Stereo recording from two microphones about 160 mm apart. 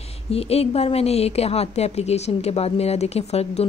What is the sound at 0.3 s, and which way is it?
A woman's voice, 40° left (ahead or behind).